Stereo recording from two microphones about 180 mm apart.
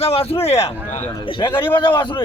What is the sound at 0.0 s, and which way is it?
Speech, 35° left (ahead or behind).